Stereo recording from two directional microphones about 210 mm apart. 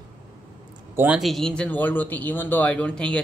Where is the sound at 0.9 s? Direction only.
5° right (ahead or behind).